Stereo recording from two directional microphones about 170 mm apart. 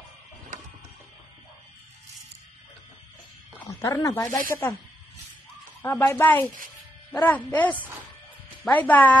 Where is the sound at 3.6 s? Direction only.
15° left (ahead or behind).